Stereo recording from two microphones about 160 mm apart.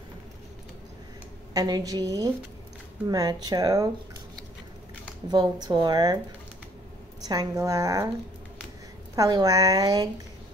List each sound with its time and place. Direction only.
1.5 s speech: 25° right (ahead or behind)
5.3 s speech: 25° right (ahead or behind)
7.2 s speech: 20° right (ahead or behind)
9.1 s speech: 25° right (ahead or behind)